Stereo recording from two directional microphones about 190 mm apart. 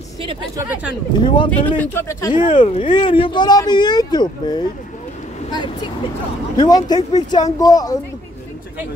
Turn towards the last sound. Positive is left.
turn(degrees=20)  # may be behind; listen again after turning